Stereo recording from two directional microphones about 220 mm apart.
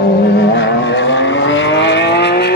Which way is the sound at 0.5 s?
55° left (ahead or behind).